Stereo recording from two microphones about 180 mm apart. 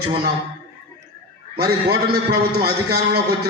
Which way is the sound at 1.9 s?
65° right (ahead or behind).